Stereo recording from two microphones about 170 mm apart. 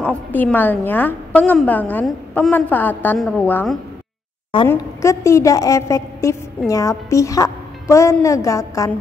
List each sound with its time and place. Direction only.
0.0 s a woman's voice: 10° left (ahead or behind)